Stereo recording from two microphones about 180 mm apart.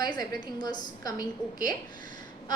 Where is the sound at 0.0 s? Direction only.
20° left (ahead or behind).